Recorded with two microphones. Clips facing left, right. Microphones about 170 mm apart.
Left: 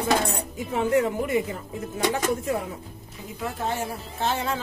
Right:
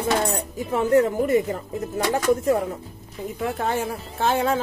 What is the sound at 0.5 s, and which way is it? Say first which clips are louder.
Speech: right 4 dB; 40° right (ahead or behind).